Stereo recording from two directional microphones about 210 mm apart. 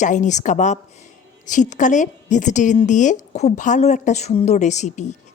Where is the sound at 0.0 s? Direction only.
35° left (ahead or behind).